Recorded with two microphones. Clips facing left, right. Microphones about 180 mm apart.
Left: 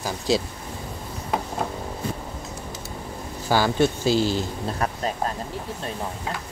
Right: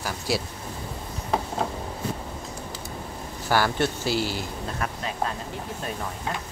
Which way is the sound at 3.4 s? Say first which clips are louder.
Left 3 dB; 15° left (ahead or behind).